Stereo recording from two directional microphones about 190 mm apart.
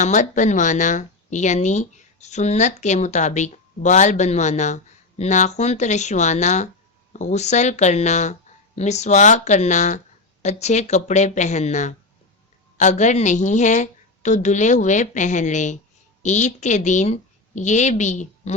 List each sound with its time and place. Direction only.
0.0 s a woman's voice: 40° left (ahead or behind)